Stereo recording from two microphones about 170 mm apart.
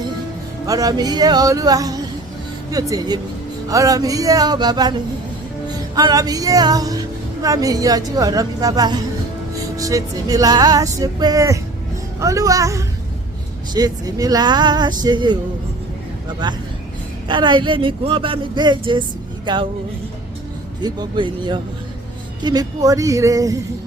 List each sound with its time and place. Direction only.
0.7 s speech: 20° right (ahead or behind)
16.4 s speech: 25° right (ahead or behind)
20.8 s speech: 25° right (ahead or behind)